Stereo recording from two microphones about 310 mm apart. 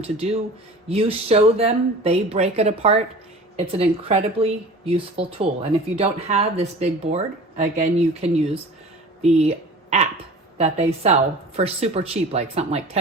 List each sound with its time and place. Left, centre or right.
0.0 s speech: centre